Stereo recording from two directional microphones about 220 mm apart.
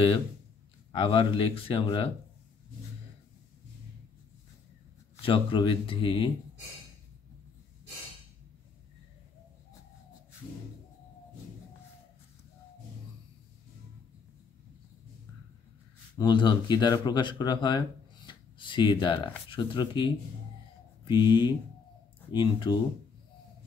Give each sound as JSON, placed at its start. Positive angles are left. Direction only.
{"t": 0.9, "sound": "speech", "side_deg": 20}
{"t": 5.2, "sound": "speech", "side_deg": 20}
{"t": 16.2, "sound": "speech", "side_deg": 20}
{"t": 21.1, "sound": "speech", "side_deg": 20}